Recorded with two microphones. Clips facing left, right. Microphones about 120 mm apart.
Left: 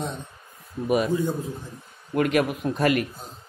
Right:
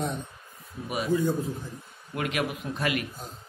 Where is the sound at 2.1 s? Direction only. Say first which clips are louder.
Left 8 dB; 45° left (ahead or behind).